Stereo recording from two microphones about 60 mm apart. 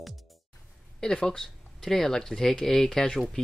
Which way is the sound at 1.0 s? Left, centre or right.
Centre.